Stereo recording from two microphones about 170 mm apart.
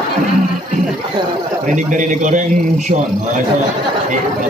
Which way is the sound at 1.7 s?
50° right (ahead or behind).